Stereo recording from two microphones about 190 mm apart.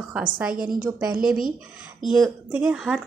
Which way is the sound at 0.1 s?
5° right (ahead or behind).